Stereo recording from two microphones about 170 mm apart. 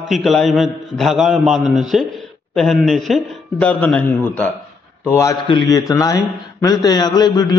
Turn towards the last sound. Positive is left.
turn(degrees=25)  # may be behind; listen again after turning